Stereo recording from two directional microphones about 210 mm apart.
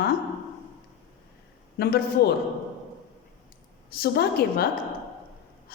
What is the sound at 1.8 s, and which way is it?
Speech, 45° left (ahead or behind).